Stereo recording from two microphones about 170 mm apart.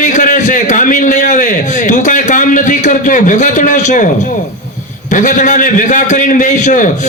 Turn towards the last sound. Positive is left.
turn(degrees=50)  # may be behind; listen again after turning